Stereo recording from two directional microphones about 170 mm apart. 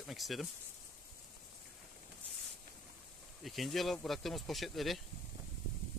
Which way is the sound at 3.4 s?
Centre (ahead or behind).